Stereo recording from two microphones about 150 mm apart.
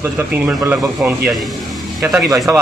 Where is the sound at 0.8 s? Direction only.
Centre (ahead or behind).